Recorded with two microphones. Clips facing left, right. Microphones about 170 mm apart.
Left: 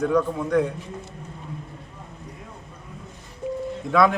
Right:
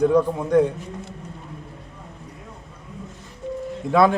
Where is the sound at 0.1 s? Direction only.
25° right (ahead or behind).